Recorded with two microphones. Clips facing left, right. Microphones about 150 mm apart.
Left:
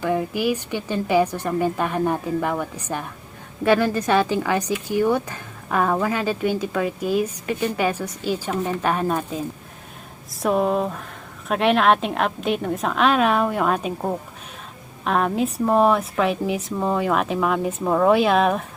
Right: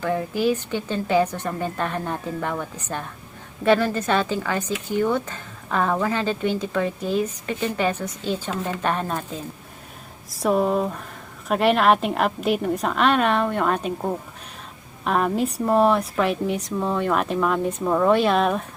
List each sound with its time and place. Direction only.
0.0 s speech: 10° left (ahead or behind)
10.3 s a woman's voice: centre (ahead or behind)